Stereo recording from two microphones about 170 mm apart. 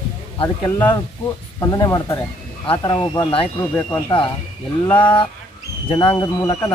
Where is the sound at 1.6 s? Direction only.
20° left (ahead or behind).